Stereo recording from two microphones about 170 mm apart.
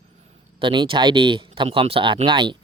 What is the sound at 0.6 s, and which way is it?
Speech, 30° right (ahead or behind).